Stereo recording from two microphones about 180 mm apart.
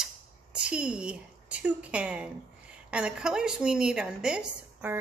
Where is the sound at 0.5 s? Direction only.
5° right (ahead or behind).